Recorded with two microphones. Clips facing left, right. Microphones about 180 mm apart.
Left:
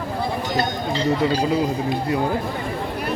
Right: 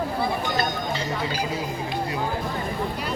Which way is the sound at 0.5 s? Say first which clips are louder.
Left 3 dB; 35° left (ahead or behind).